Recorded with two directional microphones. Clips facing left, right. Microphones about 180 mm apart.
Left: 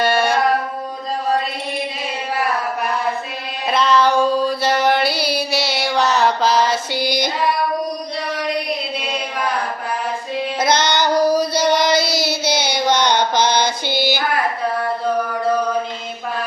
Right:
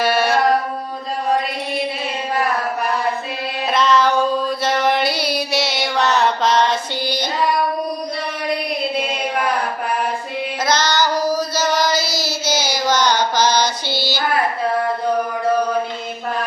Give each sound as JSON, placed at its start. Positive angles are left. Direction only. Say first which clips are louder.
{"t": 0.0, "sound": "music", "louder": "even", "side_deg": -5}
{"t": 3.7, "sound": "music", "louder": "left 1 dB", "side_deg": 0}
{"t": 10.7, "sound": "child singing", "louder": "even", "side_deg": 60}
{"t": 13.4, "sound": "mantra", "louder": "even", "side_deg": 60}
{"t": 13.8, "sound": "female singing", "louder": "left 4 dB", "side_deg": 15}